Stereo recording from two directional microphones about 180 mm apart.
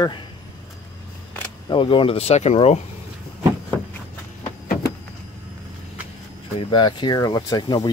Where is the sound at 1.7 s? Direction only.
30° left (ahead or behind).